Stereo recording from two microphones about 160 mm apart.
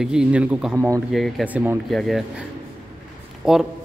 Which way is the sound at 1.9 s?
Centre (ahead or behind).